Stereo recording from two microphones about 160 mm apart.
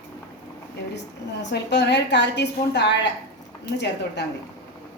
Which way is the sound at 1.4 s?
90° left.